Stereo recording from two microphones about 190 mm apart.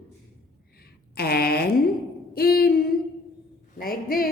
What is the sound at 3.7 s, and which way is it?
Speech, 50° left (ahead or behind).